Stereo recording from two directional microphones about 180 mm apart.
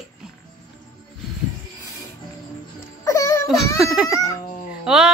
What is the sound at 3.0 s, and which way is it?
Music, 15° left (ahead or behind).